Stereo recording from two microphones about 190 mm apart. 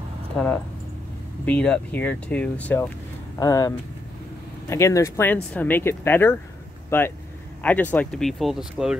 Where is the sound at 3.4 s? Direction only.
20° left (ahead or behind); by 8.9 s 5° right (ahead or behind).